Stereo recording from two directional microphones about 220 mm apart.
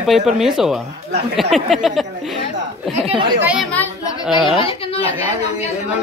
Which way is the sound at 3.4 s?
5° right (ahead or behind).